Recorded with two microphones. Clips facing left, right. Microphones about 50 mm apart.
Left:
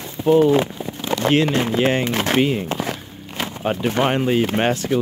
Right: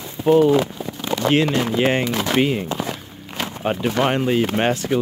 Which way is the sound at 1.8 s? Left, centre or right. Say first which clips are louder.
Even; centre.